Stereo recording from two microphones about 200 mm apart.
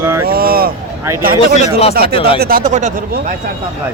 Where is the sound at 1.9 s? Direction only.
50° right (ahead or behind).